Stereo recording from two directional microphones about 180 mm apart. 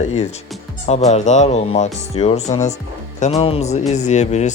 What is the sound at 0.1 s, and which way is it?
Speech, 40° left (ahead or behind).